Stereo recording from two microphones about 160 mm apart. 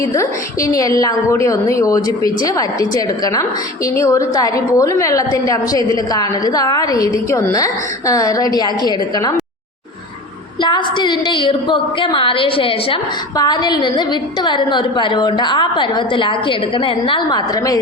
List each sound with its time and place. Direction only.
0.0 s a woman's voice: 20° left (ahead or behind)
10.6 s a woman's voice: 30° left (ahead or behind)